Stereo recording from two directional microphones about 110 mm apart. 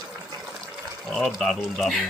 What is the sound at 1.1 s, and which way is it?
Speech, 5° left (ahead or behind).